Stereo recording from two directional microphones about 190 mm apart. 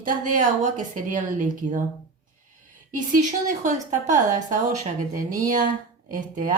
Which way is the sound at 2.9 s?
40° right (ahead or behind).